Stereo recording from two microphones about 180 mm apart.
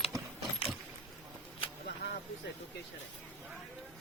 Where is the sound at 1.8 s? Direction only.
65° left (ahead or behind).